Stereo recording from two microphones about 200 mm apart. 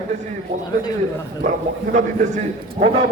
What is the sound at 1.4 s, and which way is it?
A man's voice, 40° right (ahead or behind).